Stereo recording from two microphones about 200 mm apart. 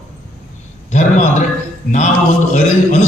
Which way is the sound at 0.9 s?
35° left (ahead or behind).